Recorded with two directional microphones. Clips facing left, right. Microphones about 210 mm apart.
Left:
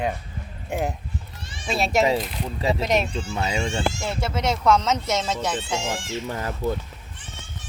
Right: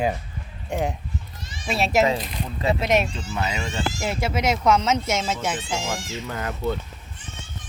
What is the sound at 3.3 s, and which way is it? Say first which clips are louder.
Speech: left 3 dB; 25° left (ahead or behind).